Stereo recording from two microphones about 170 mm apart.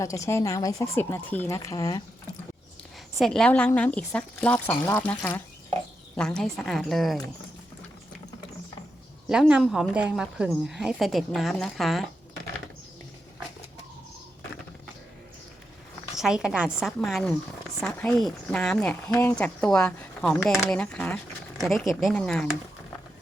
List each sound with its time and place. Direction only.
0.0 s speech: 20° left (ahead or behind)
3.2 s speech: centre (ahead or behind)
6.1 s speech: 5° left (ahead or behind)
9.3 s speech: 5° right (ahead or behind)
16.1 s speech: 5° right (ahead or behind)